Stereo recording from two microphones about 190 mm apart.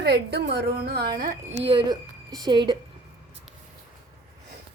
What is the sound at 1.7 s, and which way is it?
A woman's voice, 25° right (ahead or behind).